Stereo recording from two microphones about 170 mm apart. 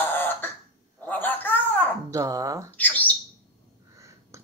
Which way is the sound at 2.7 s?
10° left (ahead or behind).